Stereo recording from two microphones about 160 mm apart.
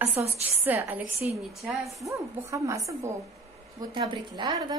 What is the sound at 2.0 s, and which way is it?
A woman's voice, 20° right (ahead or behind).